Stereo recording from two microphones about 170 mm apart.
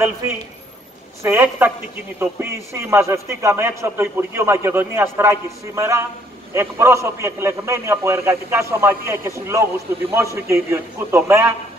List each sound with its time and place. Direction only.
1.2 s a man's voice: 15° right (ahead or behind)